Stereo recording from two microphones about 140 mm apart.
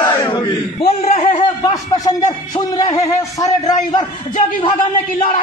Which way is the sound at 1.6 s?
25° left (ahead or behind).